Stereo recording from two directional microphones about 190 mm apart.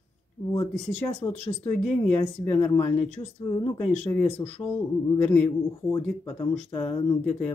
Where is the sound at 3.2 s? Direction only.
25° left (ahead or behind).